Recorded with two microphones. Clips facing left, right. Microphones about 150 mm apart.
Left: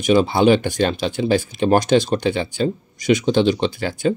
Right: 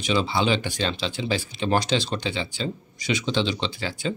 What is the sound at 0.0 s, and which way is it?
Speech, 50° left (ahead or behind).